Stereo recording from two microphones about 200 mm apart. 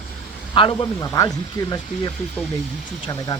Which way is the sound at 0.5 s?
25° left (ahead or behind).